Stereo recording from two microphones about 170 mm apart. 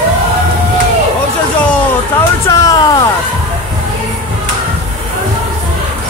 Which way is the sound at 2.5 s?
20° left (ahead or behind).